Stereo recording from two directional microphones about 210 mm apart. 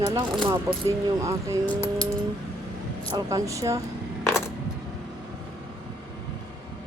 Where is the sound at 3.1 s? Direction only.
15° right (ahead or behind).